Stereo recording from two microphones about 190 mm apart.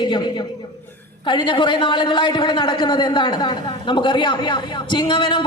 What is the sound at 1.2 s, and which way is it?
A man's voice, 25° left (ahead or behind).